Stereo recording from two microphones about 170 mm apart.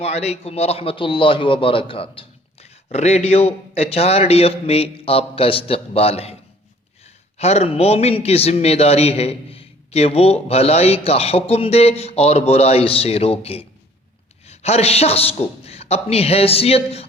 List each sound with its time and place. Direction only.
0.0 s a man's voice: 40° left (ahead or behind)